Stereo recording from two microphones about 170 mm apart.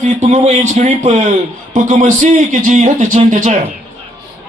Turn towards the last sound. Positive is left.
turn(degrees=-45)  # may be behind; listen again after turning